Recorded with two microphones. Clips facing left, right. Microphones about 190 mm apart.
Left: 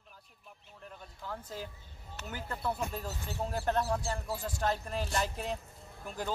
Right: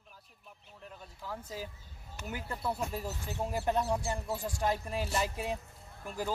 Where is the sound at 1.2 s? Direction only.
5° right (ahead or behind).